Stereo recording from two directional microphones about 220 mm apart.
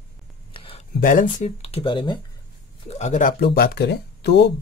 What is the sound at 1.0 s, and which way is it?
Speech, 35° left (ahead or behind).